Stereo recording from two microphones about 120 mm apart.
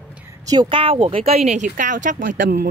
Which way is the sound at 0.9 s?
55° right (ahead or behind).